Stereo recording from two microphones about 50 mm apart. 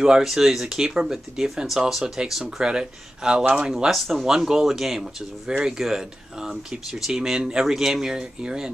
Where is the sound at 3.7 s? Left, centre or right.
Centre.